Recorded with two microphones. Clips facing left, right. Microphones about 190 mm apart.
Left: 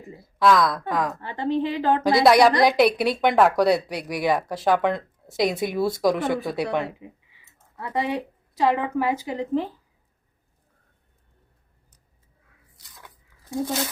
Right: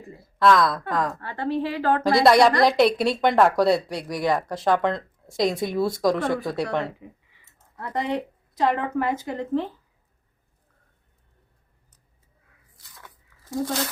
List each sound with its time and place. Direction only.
0.3 s speech: centre (ahead or behind)
1.2 s a woman's voice: 20° left (ahead or behind)
2.0 s speech: centre (ahead or behind)
13.5 s speech: 10° left (ahead or behind)